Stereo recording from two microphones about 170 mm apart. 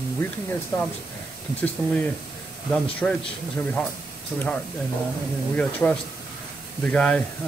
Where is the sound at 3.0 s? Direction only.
10° left (ahead or behind).